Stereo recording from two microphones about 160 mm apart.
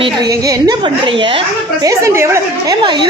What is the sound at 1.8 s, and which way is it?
Speech, 15° right (ahead or behind).